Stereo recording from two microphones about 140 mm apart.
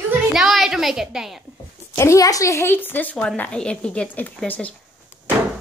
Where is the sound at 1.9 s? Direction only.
20° left (ahead or behind).